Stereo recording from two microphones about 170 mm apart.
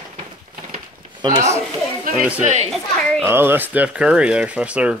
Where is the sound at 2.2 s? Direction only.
10° right (ahead or behind).